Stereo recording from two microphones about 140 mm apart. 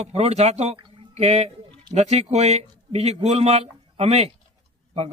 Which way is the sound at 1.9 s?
50° right (ahead or behind).